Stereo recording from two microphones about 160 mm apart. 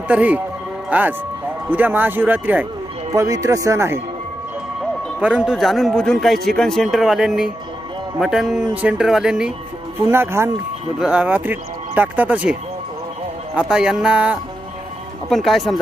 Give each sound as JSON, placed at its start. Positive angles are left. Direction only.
{"t": 0.1, "sound": "speech", "side_deg": -10}
{"t": 3.2, "sound": "speech", "side_deg": -20}
{"t": 5.2, "sound": "a man's voice", "side_deg": -5}
{"t": 10.1, "sound": "speech", "side_deg": -15}
{"t": 13.6, "sound": "a man's voice", "side_deg": -5}